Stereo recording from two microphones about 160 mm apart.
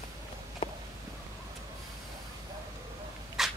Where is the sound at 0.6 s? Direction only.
35° left (ahead or behind).